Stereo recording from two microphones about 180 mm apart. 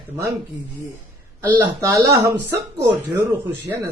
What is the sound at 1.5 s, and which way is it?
Speech, 10° right (ahead or behind).